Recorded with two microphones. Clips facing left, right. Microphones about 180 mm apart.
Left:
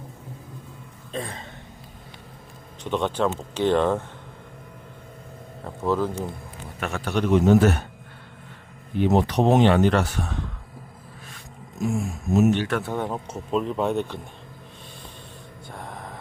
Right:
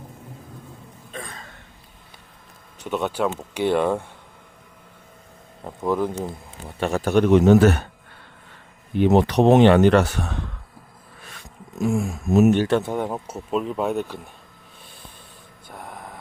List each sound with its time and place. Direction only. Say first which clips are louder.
1.1 s a sound: left 5 dB; 30° left (ahead or behind)
2.8 s speech: even; 10° right (ahead or behind)
5.6 s speech: right 1 dB; 15° right (ahead or behind)
6.7 s a man's voice: right 7 dB; 30° right (ahead or behind)
7.0 s a man's voice: right 7 dB; 50° right (ahead or behind)
7.3 s speech: right 2 dB; 75° right (ahead or behind)
9.0 s speech: right 4 dB; 70° right (ahead or behind)
12.3 s speech: right 3 dB; 65° right (ahead or behind)
12.6 s speech: right 6 dB; 25° right (ahead or behind)
12.9 s speech: right 2 dB; 10° right (ahead or behind)
15.7 s vehicle: even; 5° right (ahead or behind)